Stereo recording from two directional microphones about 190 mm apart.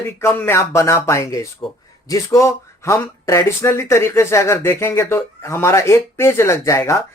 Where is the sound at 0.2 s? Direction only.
15° left (ahead or behind).